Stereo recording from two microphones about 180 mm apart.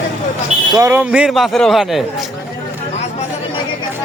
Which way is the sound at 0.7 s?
15° right (ahead or behind).